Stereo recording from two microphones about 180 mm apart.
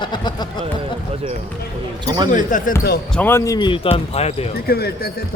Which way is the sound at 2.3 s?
45° left (ahead or behind).